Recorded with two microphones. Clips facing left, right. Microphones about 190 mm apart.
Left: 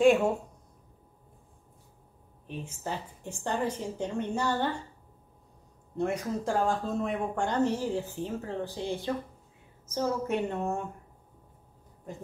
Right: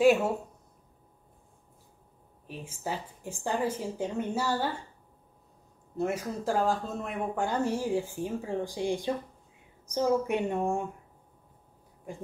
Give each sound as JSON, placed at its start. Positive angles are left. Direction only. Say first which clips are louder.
{"t": 2.4, "sound": "speech", "louder": "even", "side_deg": -10}
{"t": 5.9, "sound": "speech", "louder": "left 1 dB", "side_deg": 0}